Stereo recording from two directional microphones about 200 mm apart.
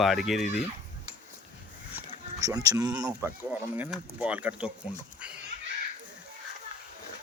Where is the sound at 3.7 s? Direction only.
5° right (ahead or behind).